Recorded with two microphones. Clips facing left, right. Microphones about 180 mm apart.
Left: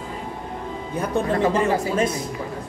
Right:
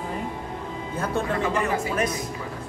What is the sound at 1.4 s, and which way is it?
Speech, 30° left (ahead or behind).